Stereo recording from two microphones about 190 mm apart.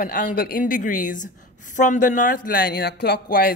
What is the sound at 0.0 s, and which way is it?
Speech, 45° left (ahead or behind).